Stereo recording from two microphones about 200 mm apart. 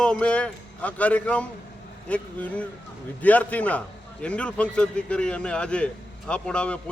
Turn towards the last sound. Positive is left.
turn(degrees=5)  # may be behind; listen again after turning